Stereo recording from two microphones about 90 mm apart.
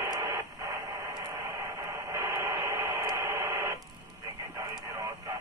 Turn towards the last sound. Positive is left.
turn(degrees=-35)  # may be behind; listen again after turning